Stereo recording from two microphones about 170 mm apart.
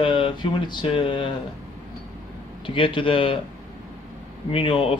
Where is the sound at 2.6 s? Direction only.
30° left (ahead or behind).